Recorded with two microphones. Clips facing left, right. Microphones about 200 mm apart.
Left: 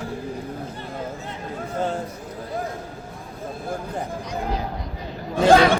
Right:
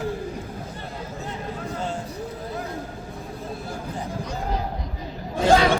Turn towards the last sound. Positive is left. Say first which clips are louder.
# left 3 dB
turn(degrees=65)  # may be behind; listen again after turning